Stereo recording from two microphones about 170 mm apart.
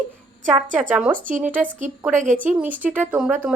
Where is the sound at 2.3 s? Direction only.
10° right (ahead or behind).